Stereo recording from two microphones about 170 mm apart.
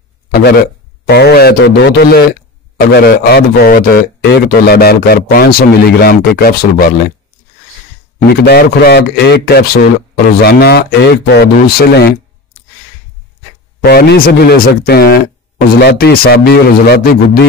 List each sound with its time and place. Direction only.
0.3 s a man's voice: 65° left (ahead or behind)
2.8 s speech: 65° left (ahead or behind)
8.5 s speech: 70° left (ahead or behind)
13.8 s speech: 65° left (ahead or behind)